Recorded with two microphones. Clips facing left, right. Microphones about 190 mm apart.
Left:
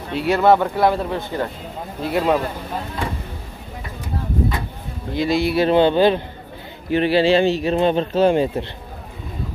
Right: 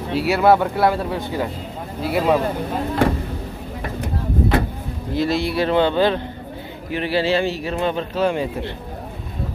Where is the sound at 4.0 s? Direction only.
70° right (ahead or behind).